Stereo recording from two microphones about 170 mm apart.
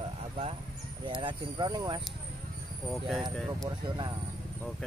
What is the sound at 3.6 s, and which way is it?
Speech, 25° right (ahead or behind).